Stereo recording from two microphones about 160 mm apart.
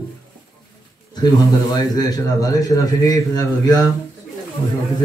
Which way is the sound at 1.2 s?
25° left (ahead or behind).